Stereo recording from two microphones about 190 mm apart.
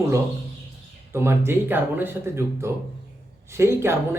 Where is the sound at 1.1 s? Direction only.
15° right (ahead or behind).